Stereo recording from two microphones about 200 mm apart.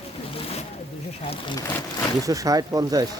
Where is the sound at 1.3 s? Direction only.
25° left (ahead or behind).